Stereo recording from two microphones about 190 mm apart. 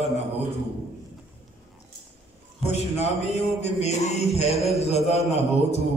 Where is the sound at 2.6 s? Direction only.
35° left (ahead or behind).